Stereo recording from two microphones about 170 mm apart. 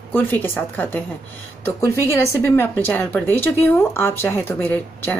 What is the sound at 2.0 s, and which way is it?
A woman's voice, 15° left (ahead or behind).